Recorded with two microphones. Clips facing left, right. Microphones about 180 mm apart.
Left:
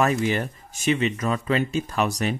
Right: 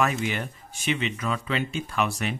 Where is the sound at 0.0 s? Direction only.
40° left (ahead or behind).